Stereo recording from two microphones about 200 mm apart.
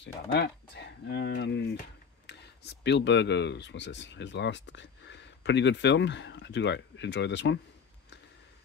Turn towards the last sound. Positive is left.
turn(degrees=60)  # may be behind; listen again after turning